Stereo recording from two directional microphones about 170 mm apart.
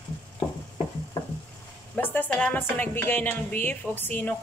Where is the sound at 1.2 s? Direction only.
20° left (ahead or behind).